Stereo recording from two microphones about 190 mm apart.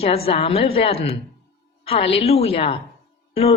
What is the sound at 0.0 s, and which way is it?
A woman's voice, 30° left (ahead or behind).